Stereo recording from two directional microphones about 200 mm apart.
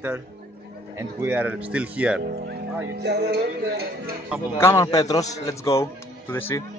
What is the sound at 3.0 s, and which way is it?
Music, 55° right (ahead or behind).